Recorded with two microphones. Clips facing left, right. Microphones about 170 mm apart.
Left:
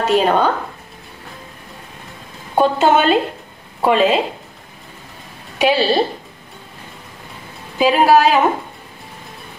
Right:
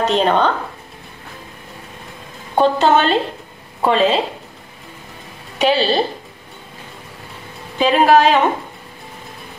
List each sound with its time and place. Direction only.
0.0 s speech: 5° left (ahead or behind)
2.5 s a woman's voice: 5° left (ahead or behind)
5.6 s a woman's voice: 5° left (ahead or behind)
7.8 s a woman's voice: 5° left (ahead or behind)